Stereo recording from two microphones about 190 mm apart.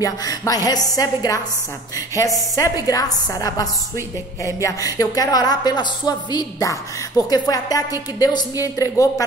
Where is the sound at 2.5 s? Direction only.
20° left (ahead or behind).